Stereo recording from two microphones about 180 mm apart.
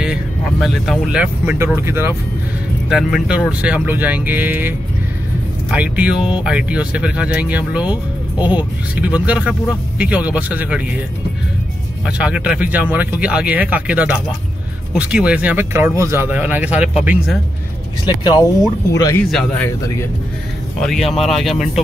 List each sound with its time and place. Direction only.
0.0 s speech: 5° right (ahead or behind)
2.9 s speech: 5° right (ahead or behind)
8.4 s speech: 25° left (ahead or behind)
9.0 s speech: 10° right (ahead or behind)
12.1 s speech: 5° right (ahead or behind)
18.9 s speech: 20° left (ahead or behind)
20.8 s speech: centre (ahead or behind)